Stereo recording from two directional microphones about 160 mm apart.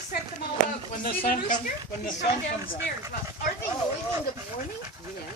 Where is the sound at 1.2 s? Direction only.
55° left (ahead or behind).